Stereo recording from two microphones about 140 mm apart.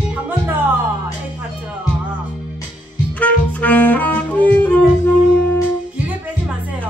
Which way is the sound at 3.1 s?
10° left (ahead or behind).